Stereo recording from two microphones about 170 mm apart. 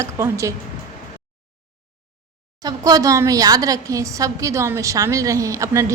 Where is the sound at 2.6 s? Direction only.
20° right (ahead or behind).